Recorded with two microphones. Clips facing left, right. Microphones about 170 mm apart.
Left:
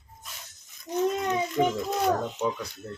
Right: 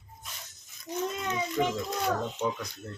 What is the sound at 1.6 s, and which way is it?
Speech, 20° left (ahead or behind).